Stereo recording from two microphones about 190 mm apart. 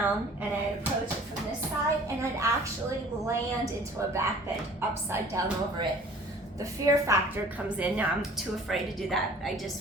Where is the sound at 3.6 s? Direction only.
15° right (ahead or behind).